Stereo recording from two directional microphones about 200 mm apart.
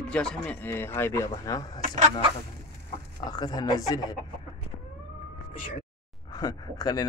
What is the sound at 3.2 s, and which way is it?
Speech, 20° left (ahead or behind).